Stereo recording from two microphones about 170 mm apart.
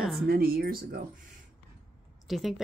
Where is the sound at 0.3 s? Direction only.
65° right (ahead or behind).